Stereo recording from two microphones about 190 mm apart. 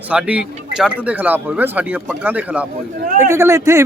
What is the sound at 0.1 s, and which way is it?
Speech, 5° right (ahead or behind).